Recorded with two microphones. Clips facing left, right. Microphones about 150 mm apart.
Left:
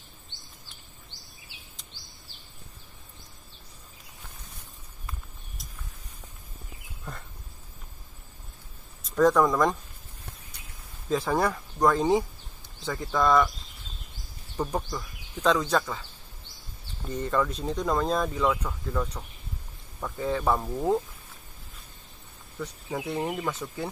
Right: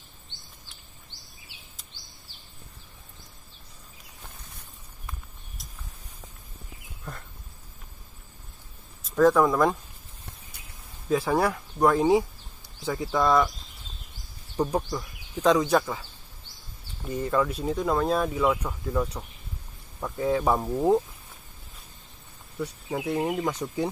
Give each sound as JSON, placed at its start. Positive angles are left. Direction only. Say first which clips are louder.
{"t": 9.0, "sound": "speech", "louder": "right 1 dB", "side_deg": 0}
{"t": 11.1, "sound": "speech", "louder": "right 2 dB", "side_deg": -10}
{"t": 14.9, "sound": "speech", "louder": "right 3 dB", "side_deg": -10}
{"t": 17.1, "sound": "speech", "louder": "right 2 dB", "side_deg": -5}
{"t": 22.6, "sound": "speech", "louder": "right 3 dB", "side_deg": -10}